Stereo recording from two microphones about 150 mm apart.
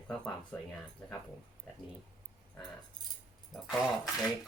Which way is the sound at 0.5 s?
15° left (ahead or behind).